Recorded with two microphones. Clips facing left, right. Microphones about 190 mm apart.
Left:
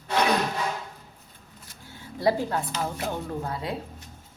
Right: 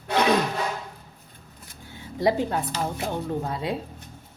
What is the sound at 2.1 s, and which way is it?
A woman's voice, 20° right (ahead or behind).